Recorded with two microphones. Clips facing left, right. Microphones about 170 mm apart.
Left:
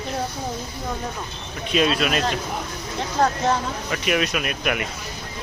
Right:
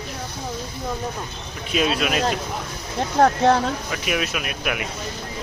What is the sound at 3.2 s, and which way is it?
Speech, 60° right (ahead or behind).